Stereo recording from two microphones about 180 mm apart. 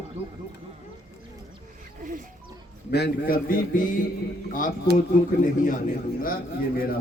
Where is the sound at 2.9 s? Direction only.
60° left (ahead or behind).